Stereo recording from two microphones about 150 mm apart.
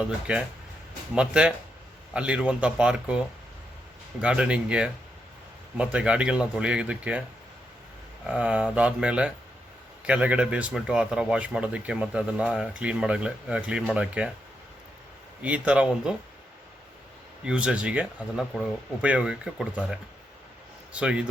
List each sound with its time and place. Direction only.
0.0 s speech: 5° right (ahead or behind)
8.3 s speech: 5° right (ahead or behind)
15.4 s speech: 10° right (ahead or behind)
17.4 s speech: 5° right (ahead or behind)